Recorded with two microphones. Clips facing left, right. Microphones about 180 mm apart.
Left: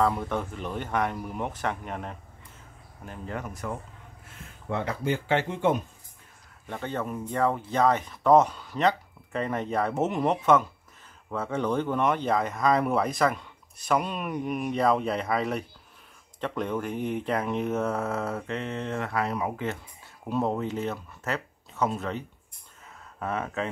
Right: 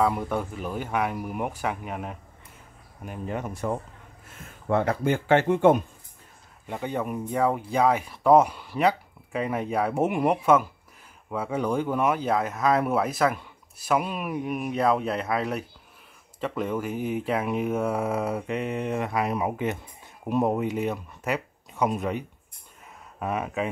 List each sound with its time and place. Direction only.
0.0 s speech: 10° right (ahead or behind)
3.0 s speech: 15° right (ahead or behind)
4.6 s speech: 50° right (ahead or behind)
6.7 s speech: 15° right (ahead or behind)